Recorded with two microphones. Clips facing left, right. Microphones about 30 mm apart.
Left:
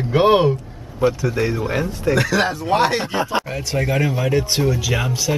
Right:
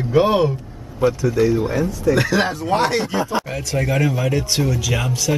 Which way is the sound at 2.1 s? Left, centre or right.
Centre.